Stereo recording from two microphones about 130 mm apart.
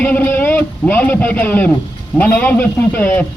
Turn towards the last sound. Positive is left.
turn(degrees=15)  # may be behind; listen again after turning